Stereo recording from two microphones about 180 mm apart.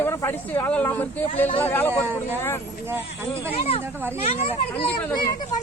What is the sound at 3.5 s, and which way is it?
Speech, 35° left (ahead or behind).